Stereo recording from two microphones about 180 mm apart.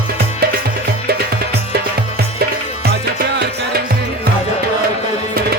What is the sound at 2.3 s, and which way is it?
Music, 35° left (ahead or behind).